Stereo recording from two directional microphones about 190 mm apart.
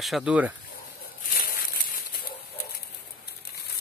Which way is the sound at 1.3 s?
50° left (ahead or behind).